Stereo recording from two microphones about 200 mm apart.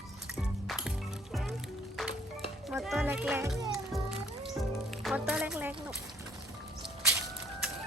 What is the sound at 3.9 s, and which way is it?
Music, 5° right (ahead or behind).